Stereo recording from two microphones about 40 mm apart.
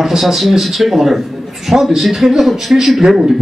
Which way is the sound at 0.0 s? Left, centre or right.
Centre.